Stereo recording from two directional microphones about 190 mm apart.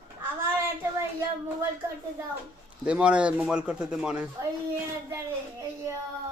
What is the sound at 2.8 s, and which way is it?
Speech, 5° right (ahead or behind).